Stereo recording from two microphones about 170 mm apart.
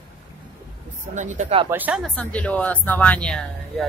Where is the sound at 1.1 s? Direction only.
45° right (ahead or behind).